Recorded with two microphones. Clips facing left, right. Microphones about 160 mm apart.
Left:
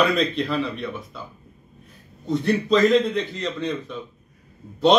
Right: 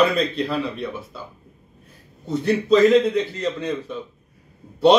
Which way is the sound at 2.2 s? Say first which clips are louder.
Right 2 dB; 5° right (ahead or behind).